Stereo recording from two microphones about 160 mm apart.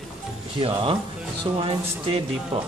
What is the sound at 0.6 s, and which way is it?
Speech, 35° right (ahead or behind).